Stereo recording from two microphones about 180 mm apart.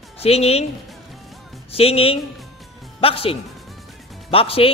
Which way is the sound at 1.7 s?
30° left (ahead or behind).